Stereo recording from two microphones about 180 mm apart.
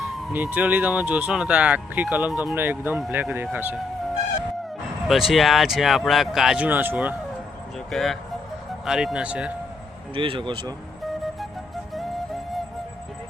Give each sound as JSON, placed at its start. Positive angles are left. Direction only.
{"t": 0.3, "sound": "speech", "side_deg": -10}
{"t": 5.0, "sound": "speech", "side_deg": 0}
{"t": 7.9, "sound": "speech", "side_deg": 0}
{"t": 10.2, "sound": "speech", "side_deg": -25}